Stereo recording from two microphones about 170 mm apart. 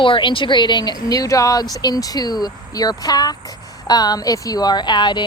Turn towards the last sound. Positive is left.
turn(degrees=25)  # may be behind; listen again after turning